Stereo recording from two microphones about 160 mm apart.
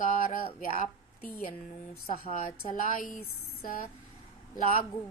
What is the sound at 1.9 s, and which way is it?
A woman's voice, 60° left (ahead or behind).